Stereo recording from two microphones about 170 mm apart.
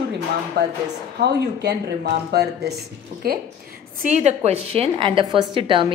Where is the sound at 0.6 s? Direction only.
70° right (ahead or behind).